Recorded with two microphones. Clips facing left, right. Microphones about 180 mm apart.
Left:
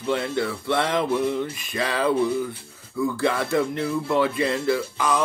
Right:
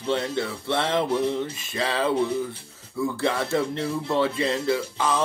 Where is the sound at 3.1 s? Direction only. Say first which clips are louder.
Left 2 dB; 25° right (ahead or behind).